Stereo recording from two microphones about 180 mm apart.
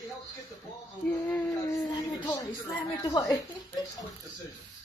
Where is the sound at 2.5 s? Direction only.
20° left (ahead or behind).